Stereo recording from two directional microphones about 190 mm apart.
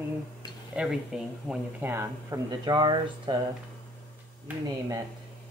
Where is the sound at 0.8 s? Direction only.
Centre (ahead or behind).